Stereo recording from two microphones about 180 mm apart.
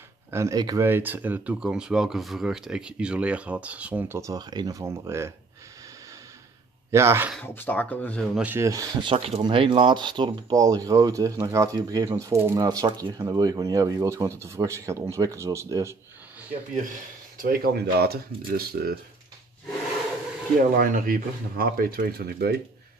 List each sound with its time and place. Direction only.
0.3 s speech: 15° right (ahead or behind)
6.9 s speech: 15° right (ahead or behind)
7.3 s speech: 10° left (ahead or behind)
8.4 s speech: 10° right (ahead or behind)
9.1 s speech: 35° right (ahead or behind); by 16.5 s 10° right (ahead or behind)
17.4 s speech: 55° right (ahead or behind)
20.7 s speech: 50° right (ahead or behind)